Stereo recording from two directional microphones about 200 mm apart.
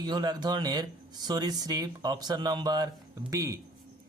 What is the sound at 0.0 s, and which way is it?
A man's voice, 20° right (ahead or behind).